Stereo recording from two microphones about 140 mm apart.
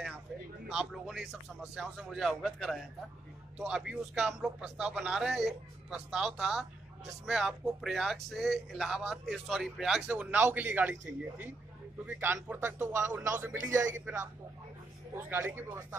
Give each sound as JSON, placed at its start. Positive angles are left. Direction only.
{"t": 0.7, "sound": "speech", "side_deg": -5}